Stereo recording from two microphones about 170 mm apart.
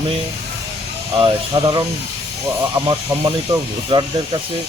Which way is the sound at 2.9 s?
25° right (ahead or behind).